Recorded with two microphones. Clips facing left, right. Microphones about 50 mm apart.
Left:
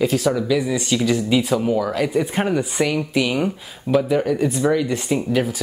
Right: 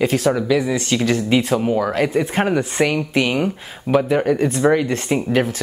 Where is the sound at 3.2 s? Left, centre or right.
Right.